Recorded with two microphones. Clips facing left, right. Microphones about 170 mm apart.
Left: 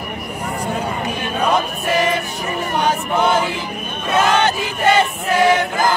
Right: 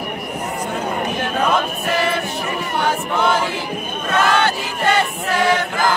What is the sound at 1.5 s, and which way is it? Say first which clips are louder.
Choir: left 1 dB; 15° left (ahead or behind).